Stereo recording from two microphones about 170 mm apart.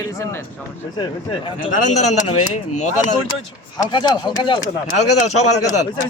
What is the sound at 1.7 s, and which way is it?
Speech, 45° left (ahead or behind).